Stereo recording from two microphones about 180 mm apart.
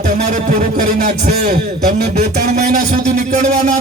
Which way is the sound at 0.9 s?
55° right (ahead or behind).